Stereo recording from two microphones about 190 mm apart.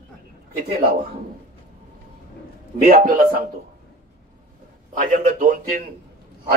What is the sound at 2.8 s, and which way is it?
Speech, 50° right (ahead or behind).